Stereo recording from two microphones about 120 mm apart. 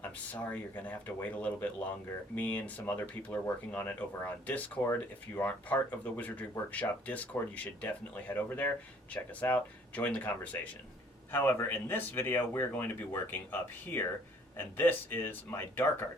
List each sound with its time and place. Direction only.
0.3 s speech: 10° left (ahead or behind)